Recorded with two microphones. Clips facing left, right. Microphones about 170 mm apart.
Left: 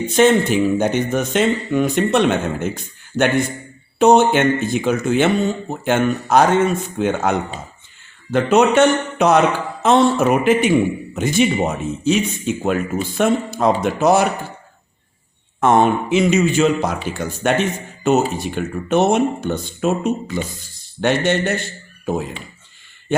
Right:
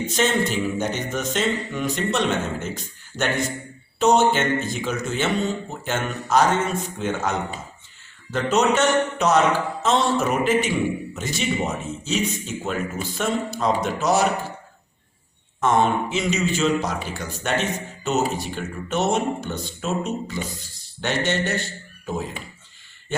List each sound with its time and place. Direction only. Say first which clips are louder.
0.1 s speech: left 9 dB; 55° left (ahead or behind)
15.6 s speech: left 5 dB; 60° left (ahead or behind)